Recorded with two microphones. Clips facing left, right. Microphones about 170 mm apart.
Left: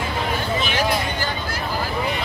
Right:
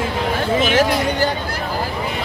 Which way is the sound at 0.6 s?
85° right.